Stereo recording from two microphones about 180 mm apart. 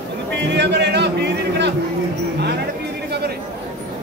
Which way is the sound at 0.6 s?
70° right (ahead or behind).